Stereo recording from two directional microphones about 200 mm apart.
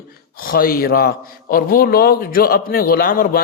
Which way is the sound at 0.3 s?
45° left (ahead or behind).